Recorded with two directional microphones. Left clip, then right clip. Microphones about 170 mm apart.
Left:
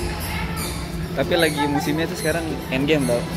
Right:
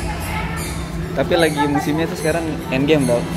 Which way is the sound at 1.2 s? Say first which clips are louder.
Right 3 dB; 5° right (ahead or behind).